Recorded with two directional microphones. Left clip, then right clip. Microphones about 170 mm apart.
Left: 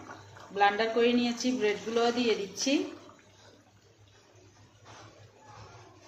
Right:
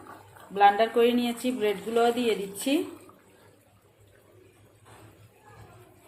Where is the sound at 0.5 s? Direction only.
30° right (ahead or behind).